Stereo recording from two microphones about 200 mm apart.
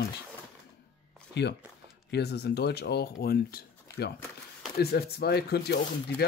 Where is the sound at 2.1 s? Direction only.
55° left (ahead or behind).